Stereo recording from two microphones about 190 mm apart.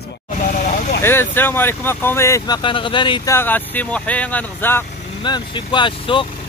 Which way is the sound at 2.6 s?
25° left (ahead or behind).